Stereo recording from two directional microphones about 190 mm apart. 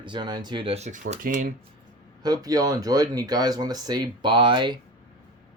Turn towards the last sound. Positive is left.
turn(degrees=-25)  # may be behind; listen again after turning